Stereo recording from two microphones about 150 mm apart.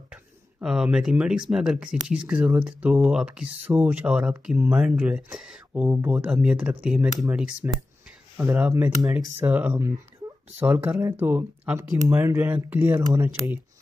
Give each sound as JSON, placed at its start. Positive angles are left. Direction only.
{"t": 0.1, "sound": "a sound", "side_deg": -5}
{"t": 1.5, "sound": "speech", "side_deg": -5}
{"t": 5.7, "sound": "speech", "side_deg": -15}